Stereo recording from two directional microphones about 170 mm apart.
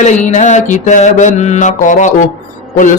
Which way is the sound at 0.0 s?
45° left (ahead or behind).